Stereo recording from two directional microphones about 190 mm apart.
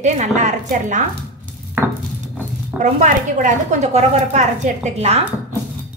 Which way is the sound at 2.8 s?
40° right (ahead or behind).